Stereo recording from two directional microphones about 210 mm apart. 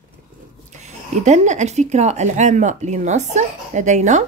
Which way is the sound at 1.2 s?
35° right (ahead or behind).